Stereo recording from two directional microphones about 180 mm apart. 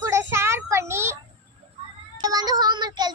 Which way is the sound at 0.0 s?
15° right (ahead or behind).